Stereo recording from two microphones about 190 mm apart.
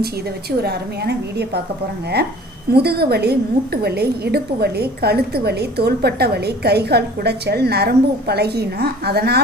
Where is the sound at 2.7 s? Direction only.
55° right (ahead or behind).